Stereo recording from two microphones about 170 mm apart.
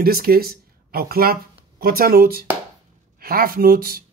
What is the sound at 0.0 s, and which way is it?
Speech, 60° right (ahead or behind).